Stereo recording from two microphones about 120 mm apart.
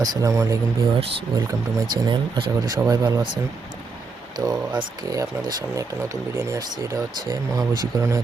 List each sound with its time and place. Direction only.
0.0 s speech: 30° right (ahead or behind)